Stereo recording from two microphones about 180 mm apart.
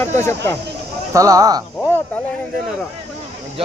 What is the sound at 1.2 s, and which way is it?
Speech, 20° right (ahead or behind).